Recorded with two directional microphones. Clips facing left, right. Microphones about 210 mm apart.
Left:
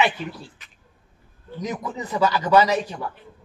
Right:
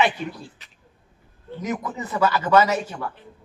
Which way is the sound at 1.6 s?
15° left (ahead or behind).